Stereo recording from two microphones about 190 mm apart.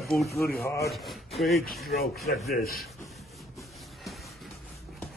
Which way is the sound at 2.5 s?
50° left (ahead or behind).